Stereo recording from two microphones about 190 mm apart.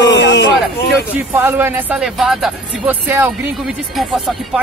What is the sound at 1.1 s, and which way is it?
Speech, 10° right (ahead or behind).